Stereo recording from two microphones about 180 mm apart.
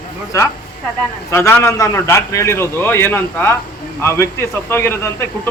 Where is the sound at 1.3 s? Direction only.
15° left (ahead or behind).